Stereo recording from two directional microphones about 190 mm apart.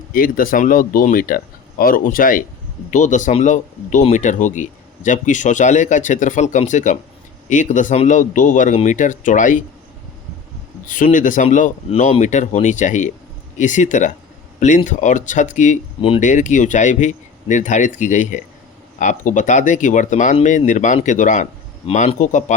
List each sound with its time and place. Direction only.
0.1 s speech: 50° left (ahead or behind)
10.8 s speech: 45° left (ahead or behind)
16.2 s speech: 40° left (ahead or behind)